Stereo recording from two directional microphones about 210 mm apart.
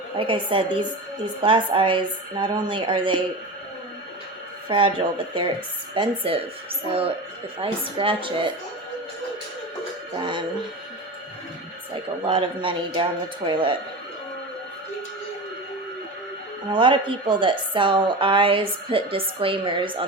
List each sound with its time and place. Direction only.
0.2 s a woman's voice: 25° right (ahead or behind)
4.7 s a woman's voice: 25° right (ahead or behind)
7.6 s a woman's voice: 25° right (ahead or behind)
10.2 s a woman's voice: 20° right (ahead or behind)
12.2 s a woman's voice: 25° right (ahead or behind)
16.7 s a woman's voice: 25° right (ahead or behind)